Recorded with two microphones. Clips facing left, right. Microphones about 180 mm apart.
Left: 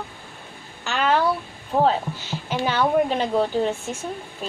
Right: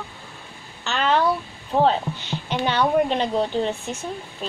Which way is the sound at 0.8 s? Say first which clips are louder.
Even; 10° left (ahead or behind).